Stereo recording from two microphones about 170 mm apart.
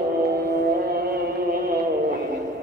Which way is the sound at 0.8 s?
60° right (ahead or behind).